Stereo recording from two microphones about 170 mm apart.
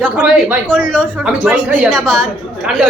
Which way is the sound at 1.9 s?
5° left (ahead or behind).